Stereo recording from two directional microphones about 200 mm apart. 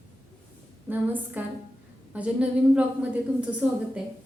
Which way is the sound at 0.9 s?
10° right (ahead or behind).